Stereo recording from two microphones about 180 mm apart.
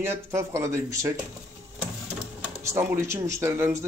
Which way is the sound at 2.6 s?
15° right (ahead or behind).